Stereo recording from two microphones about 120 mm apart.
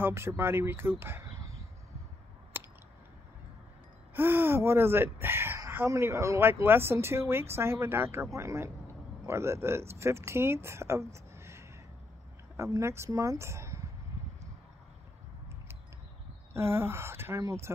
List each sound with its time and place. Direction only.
0.0 s speech: 20° right (ahead or behind)
2.5 s a sound: 15° right (ahead or behind)
4.1 s speech: 15° right (ahead or behind)
16.5 s speech: 20° right (ahead or behind)